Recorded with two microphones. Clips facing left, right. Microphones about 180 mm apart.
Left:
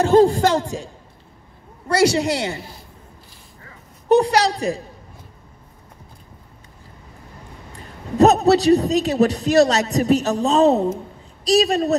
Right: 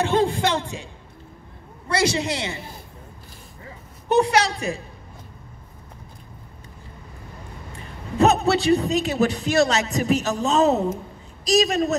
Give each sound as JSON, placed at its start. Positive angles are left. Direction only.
{"t": 0.0, "sound": "a man's voice", "side_deg": 40}
{"t": 1.9, "sound": "a man's voice", "side_deg": 40}
{"t": 4.1, "sound": "a man's voice", "side_deg": 35}
{"t": 8.2, "sound": "a man's voice", "side_deg": 40}